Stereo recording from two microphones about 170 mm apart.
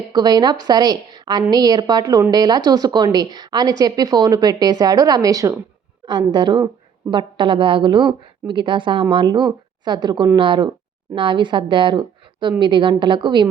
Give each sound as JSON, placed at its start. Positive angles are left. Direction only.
{"t": 0.1, "sound": "speech", "side_deg": -25}